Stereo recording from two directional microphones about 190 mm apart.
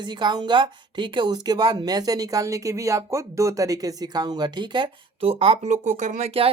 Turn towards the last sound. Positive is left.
turn(degrees=-35)  # may be behind; listen again after turning